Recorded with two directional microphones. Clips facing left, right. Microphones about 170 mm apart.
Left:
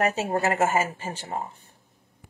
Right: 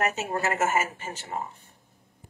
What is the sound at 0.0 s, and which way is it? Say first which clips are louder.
Speech: left 3 dB; 35° left (ahead or behind).